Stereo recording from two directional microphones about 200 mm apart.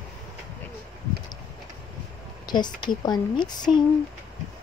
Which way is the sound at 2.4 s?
20° left (ahead or behind).